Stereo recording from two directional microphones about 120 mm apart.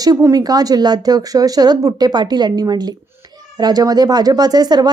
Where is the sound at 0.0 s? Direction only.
30° right (ahead or behind).